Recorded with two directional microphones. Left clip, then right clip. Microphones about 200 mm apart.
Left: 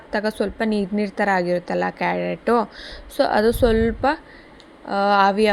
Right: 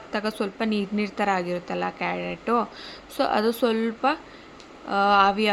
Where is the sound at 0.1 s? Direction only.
20° left (ahead or behind).